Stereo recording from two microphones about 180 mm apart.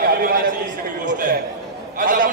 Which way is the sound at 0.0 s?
55° right (ahead or behind).